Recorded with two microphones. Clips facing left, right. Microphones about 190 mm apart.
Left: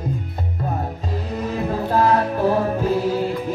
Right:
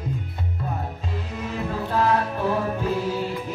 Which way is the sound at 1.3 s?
40° left (ahead or behind).